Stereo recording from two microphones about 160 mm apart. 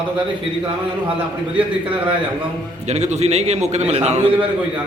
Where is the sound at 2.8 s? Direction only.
45° right (ahead or behind).